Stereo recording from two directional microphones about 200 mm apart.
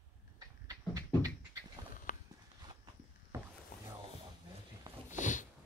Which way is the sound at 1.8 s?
20° right (ahead or behind).